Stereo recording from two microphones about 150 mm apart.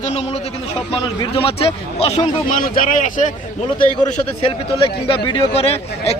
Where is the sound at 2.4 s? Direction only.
65° left (ahead or behind).